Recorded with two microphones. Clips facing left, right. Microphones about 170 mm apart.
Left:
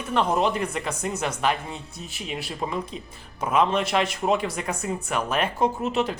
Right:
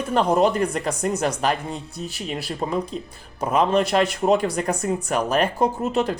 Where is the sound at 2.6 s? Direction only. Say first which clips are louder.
Right 5 dB; 35° right (ahead or behind).